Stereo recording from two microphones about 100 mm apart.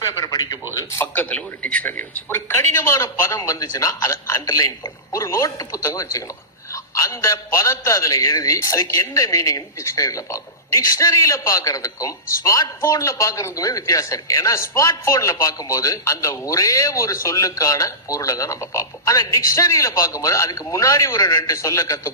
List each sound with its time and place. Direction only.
0.0 s a sound: 30° left (ahead or behind)
0.7 s speech: 30° left (ahead or behind)
1.0 s a man's voice: 15° left (ahead or behind); by 22.1 s 35° left (ahead or behind)